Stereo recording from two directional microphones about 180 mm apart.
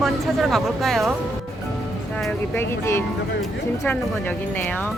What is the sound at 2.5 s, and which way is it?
Speech, 15° left (ahead or behind).